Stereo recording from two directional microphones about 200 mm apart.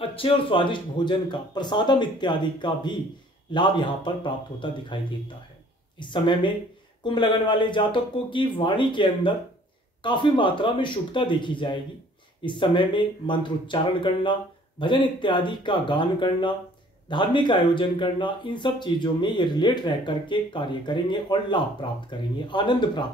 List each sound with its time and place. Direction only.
0.1 s speech: 25° left (ahead or behind)